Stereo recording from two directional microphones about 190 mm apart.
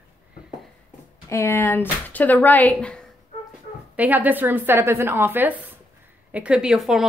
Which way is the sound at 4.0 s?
10° right (ahead or behind).